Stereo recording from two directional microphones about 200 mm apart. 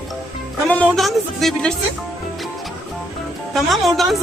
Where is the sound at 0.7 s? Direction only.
5° left (ahead or behind).